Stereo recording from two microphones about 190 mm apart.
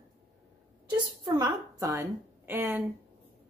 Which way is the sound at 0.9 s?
20° right (ahead or behind).